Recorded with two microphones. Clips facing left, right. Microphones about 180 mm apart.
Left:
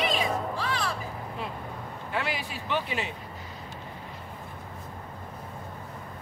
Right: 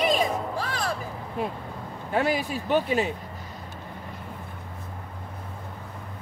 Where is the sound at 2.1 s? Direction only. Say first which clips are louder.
Right 8 dB; 45° right (ahead or behind).